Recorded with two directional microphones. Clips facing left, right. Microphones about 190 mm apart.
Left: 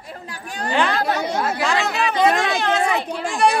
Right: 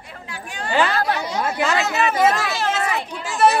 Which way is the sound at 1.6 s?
5° right (ahead or behind).